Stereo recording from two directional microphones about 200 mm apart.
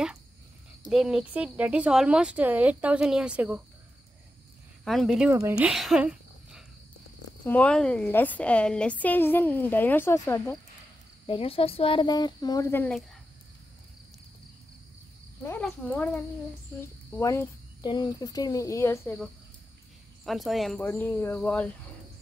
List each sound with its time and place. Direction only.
0.8 s speech: centre (ahead or behind)
4.8 s speech: centre (ahead or behind)
7.4 s a woman's voice: 5° left (ahead or behind)
11.2 s speech: 30° left (ahead or behind); by 13.0 s 10° left (ahead or behind)
15.4 s a woman's voice: 10° left (ahead or behind)
20.2 s a woman's voice: centre (ahead or behind)